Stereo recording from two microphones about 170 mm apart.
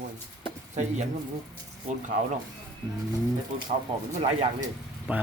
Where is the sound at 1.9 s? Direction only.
45° right (ahead or behind).